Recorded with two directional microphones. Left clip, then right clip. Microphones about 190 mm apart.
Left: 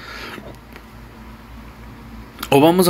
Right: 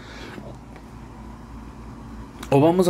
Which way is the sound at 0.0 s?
5° right (ahead or behind).